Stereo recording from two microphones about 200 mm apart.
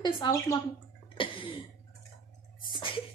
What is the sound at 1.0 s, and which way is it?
Cough, 25° left (ahead or behind).